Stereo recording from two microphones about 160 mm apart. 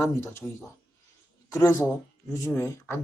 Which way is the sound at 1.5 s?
20° left (ahead or behind).